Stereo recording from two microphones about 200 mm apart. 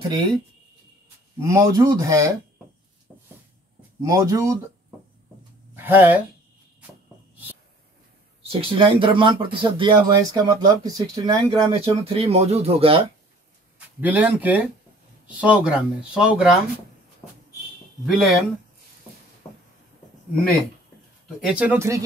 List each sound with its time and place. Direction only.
1.4 s speech: 15° right (ahead or behind)
4.0 s speech: 15° right (ahead or behind)
5.8 s speech: 10° right (ahead or behind)
8.4 s speech: 25° right (ahead or behind)
13.7 s speech: 10° right (ahead or behind)
18.0 s speech: centre (ahead or behind)
19.4 s a sound: 20° left (ahead or behind)
21.4 s speech: 5° right (ahead or behind)